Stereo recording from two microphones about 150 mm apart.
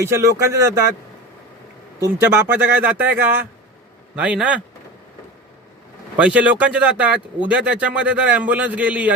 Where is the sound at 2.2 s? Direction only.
15° right (ahead or behind).